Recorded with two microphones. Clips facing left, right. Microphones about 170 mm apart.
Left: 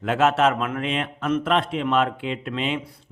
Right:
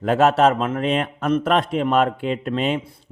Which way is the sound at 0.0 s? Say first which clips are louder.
Right 4 dB; 40° right (ahead or behind).